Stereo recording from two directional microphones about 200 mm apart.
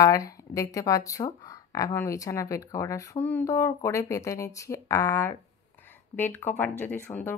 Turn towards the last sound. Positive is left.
turn(degrees=10)  # may be behind; listen again after turning